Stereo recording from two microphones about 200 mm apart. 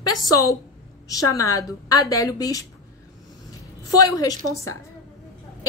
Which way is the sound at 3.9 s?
20° left (ahead or behind).